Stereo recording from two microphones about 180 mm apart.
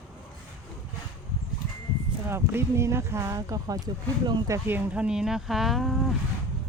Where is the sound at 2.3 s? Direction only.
15° right (ahead or behind).